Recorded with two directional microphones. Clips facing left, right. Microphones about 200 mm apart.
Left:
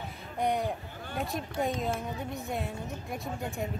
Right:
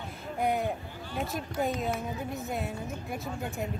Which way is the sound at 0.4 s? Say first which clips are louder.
Even; 5° right (ahead or behind).